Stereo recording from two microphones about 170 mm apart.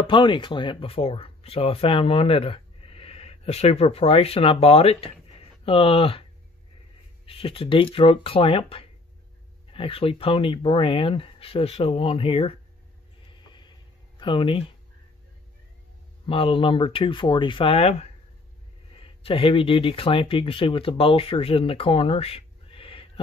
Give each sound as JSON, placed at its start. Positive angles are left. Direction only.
{"t": 0.0, "sound": "speech", "side_deg": 30}
{"t": 7.2, "sound": "speech", "side_deg": 30}
{"t": 13.3, "sound": "a sound", "side_deg": 25}
{"t": 16.3, "sound": "speech", "side_deg": 30}